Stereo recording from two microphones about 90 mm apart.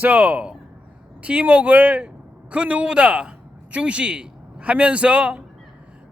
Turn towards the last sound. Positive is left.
turn(degrees=-10)  # may be behind; listen again after turning